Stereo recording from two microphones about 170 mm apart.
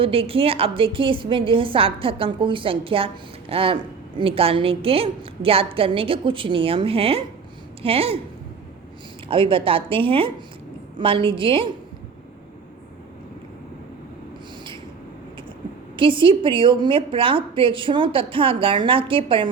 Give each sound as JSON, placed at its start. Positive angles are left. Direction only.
{"t": 0.0, "sound": "a woman's voice", "side_deg": -35}
{"t": 9.3, "sound": "a woman's voice", "side_deg": -30}
{"t": 16.0, "sound": "a woman's voice", "side_deg": -30}